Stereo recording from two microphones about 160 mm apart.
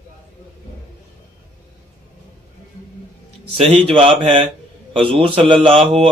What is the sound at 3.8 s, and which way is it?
A man's voice, 35° right (ahead or behind).